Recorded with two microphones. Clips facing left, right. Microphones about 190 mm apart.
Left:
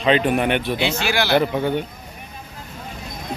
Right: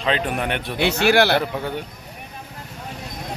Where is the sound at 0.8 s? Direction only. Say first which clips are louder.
Right 5 dB; 60° right (ahead or behind).